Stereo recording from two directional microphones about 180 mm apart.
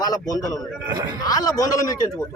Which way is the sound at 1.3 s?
20° left (ahead or behind).